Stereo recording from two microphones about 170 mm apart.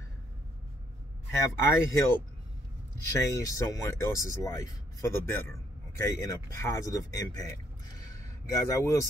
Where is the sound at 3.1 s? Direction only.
15° left (ahead or behind).